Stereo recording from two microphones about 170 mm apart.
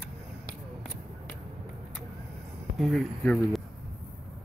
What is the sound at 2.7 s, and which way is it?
Speech, centre (ahead or behind).